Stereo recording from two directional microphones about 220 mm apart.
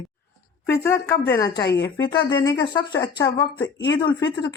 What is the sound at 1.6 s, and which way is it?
Speech, 50° left (ahead or behind).